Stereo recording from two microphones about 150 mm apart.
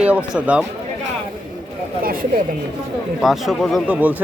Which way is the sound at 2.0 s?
70° right (ahead or behind).